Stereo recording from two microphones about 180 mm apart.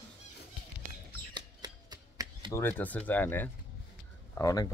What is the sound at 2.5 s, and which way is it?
Speech, 10° left (ahead or behind).